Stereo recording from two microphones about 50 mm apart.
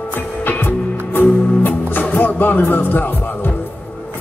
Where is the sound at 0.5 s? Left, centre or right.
Left.